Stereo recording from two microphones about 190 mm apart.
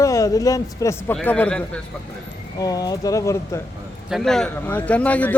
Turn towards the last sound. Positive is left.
turn(degrees=10)  # may be behind; listen again after turning